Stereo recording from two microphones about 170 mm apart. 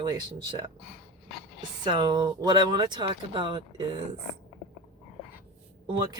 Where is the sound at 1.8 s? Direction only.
25° right (ahead or behind).